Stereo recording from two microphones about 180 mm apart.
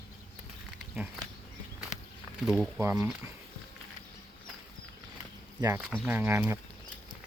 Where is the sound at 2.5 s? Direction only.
Centre (ahead or behind).